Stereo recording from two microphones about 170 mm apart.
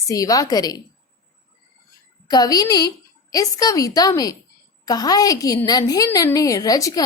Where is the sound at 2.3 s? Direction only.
20° left (ahead or behind).